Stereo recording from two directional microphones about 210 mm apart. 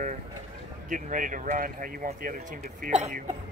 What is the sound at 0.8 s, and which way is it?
Speech, 40° right (ahead or behind).